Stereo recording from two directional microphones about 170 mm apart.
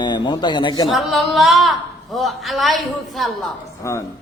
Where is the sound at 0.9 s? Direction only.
Centre (ahead or behind).